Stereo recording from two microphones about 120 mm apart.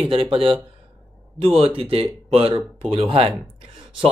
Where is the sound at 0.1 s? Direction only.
50° right (ahead or behind).